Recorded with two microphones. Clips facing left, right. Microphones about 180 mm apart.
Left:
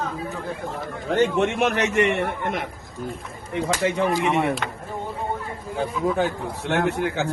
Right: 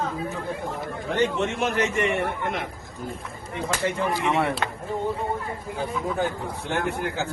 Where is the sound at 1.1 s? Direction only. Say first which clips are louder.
Left 4 dB; 55° left (ahead or behind); by 2.3 s 70° left (ahead or behind).